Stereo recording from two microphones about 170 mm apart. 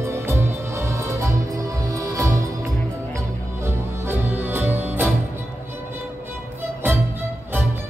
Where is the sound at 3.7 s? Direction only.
10° right (ahead or behind).